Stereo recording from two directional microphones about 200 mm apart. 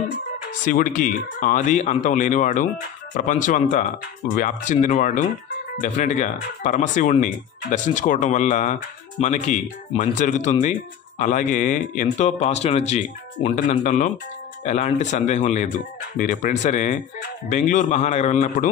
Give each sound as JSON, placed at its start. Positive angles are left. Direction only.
{"t": 0.7, "sound": "speech", "side_deg": 40}